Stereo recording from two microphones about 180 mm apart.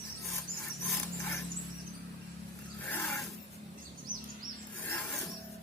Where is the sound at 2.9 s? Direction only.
10° left (ahead or behind).